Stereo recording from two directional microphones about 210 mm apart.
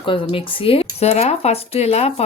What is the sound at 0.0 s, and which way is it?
A woman's voice, 25° left (ahead or behind).